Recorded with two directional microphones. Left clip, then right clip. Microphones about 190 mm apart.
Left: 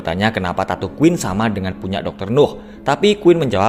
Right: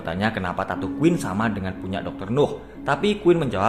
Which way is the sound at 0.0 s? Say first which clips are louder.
Left 6 dB; 40° left (ahead or behind).